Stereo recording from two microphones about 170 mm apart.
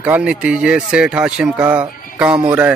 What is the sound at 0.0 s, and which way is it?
Speech, 5° right (ahead or behind).